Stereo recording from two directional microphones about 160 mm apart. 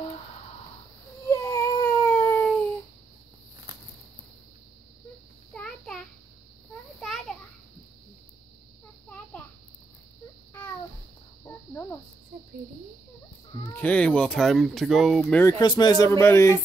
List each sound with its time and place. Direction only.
1.3 s baby cry: 20° left (ahead or behind)
5.5 s a sound: 5° left (ahead or behind)
11.4 s cricket: 15° left (ahead or behind)
13.7 s speech: 10° left (ahead or behind)
15.4 s speech: 25° left (ahead or behind)